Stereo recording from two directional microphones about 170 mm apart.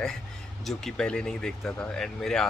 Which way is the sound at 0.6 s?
5° left (ahead or behind).